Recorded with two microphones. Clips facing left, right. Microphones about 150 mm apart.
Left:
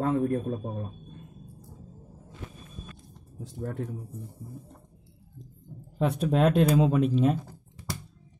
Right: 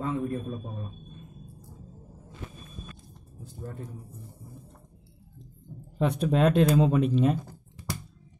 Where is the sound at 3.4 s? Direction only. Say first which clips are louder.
Left 6 dB; 80° left.